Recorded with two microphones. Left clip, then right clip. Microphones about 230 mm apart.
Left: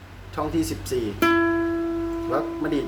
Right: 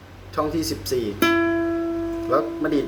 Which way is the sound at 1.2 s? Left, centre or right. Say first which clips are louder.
Even; centre.